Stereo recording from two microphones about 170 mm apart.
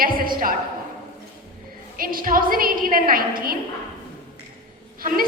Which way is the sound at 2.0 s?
55° right (ahead or behind).